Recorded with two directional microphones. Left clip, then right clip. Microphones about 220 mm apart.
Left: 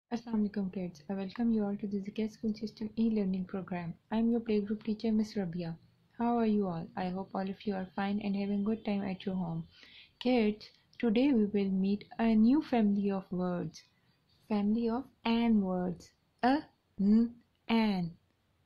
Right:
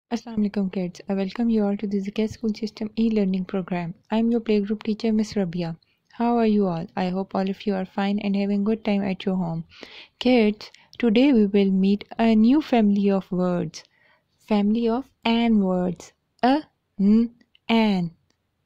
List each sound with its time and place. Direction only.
0.1 s speech: 45° right (ahead or behind)